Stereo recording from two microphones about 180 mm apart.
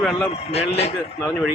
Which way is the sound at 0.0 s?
Centre (ahead or behind).